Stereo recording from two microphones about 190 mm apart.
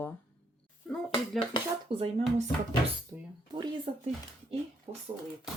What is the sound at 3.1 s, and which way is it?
Speech, 15° right (ahead or behind).